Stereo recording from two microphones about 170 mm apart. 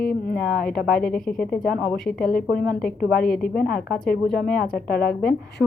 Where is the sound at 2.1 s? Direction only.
60° left (ahead or behind).